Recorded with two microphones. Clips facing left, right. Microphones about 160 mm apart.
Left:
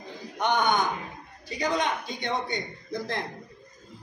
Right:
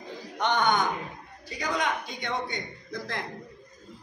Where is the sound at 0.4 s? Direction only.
10° left (ahead or behind).